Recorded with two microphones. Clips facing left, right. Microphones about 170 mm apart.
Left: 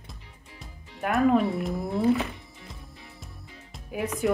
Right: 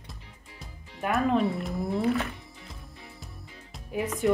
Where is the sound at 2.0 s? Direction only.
25° left (ahead or behind).